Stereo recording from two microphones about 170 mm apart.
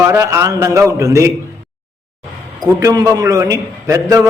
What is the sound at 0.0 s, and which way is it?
A man's voice, 15° right (ahead or behind).